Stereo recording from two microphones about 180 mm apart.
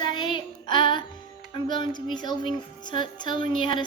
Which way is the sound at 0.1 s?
25° left (ahead or behind).